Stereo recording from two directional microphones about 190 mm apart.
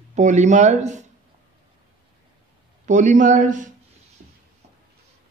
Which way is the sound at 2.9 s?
40° right (ahead or behind).